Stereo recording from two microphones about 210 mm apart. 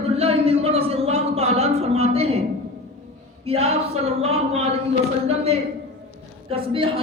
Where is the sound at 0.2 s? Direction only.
30° right (ahead or behind).